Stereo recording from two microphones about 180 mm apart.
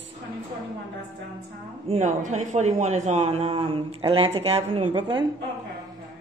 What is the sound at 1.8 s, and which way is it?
A man's voice, 40° right (ahead or behind).